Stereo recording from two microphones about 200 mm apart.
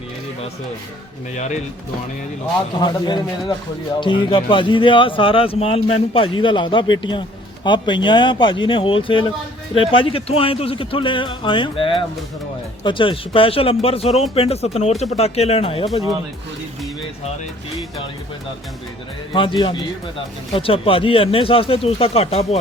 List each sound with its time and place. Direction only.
2.8 s a man's voice: 20° left (ahead or behind)
19.3 s a man's voice: 25° left (ahead or behind)